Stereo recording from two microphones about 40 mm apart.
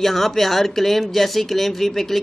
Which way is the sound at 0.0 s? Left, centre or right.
Centre.